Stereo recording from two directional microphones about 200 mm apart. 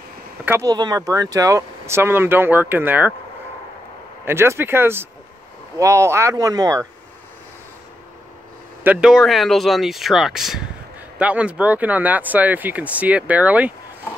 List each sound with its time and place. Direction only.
0.5 s speech: 15° right (ahead or behind)
4.2 s speech: 10° right (ahead or behind)
8.8 s speech: 5° right (ahead or behind)